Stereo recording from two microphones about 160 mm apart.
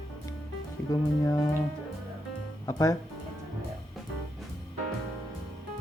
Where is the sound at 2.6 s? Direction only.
20° left (ahead or behind).